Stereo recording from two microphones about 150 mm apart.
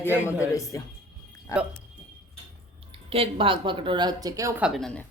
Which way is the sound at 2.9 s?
40° right (ahead or behind).